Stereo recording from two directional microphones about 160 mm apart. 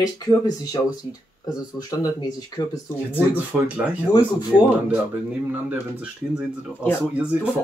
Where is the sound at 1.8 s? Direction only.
25° left (ahead or behind).